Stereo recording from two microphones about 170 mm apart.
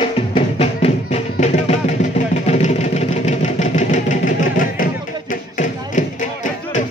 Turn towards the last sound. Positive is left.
turn(degrees=45)  # may be behind; listen again after turning